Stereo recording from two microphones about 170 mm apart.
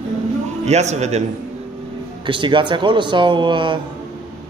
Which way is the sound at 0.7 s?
40° right (ahead or behind).